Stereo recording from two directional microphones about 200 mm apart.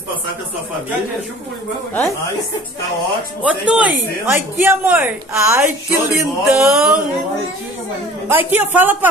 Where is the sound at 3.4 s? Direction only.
5° right (ahead or behind).